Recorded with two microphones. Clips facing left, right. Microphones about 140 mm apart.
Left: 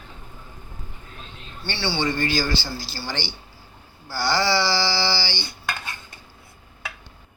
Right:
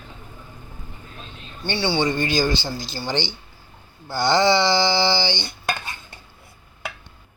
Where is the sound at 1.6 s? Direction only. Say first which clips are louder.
Right 4 dB; 15° right (ahead or behind).